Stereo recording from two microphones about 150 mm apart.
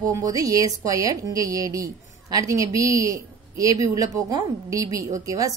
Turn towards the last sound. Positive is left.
turn(degrees=-20)  # may be behind; listen again after turning